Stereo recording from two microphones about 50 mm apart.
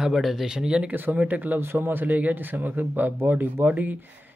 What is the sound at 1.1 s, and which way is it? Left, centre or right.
Speech, right.